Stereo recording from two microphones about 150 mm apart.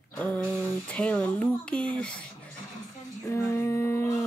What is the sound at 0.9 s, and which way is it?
Speech, 10° left (ahead or behind).